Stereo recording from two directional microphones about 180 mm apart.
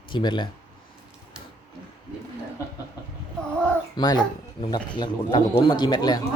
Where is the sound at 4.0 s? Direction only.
25° left (ahead or behind).